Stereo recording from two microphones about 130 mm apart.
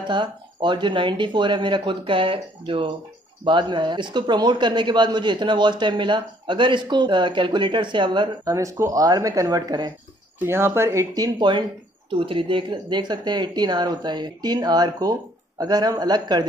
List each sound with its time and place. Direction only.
0.0 s a man's voice: 35° right (ahead or behind)
8.5 s speech: 25° right (ahead or behind)
10.4 s a man's voice: 20° right (ahead or behind)